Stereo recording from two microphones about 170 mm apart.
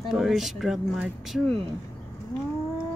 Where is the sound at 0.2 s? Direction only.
Centre (ahead or behind).